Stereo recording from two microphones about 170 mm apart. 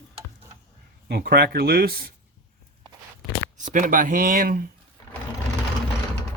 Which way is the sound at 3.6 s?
50° right (ahead or behind).